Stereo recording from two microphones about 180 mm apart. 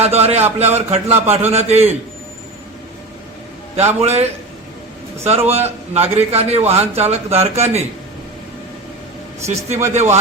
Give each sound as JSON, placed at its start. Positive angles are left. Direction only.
{"t": 0.0, "sound": "a man's voice", "side_deg": -35}
{"t": 3.8, "sound": "a man's voice", "side_deg": -35}
{"t": 9.6, "sound": "a man's voice", "side_deg": -40}